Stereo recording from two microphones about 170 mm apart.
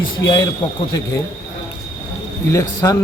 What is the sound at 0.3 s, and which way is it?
Speech, 25° left (ahead or behind).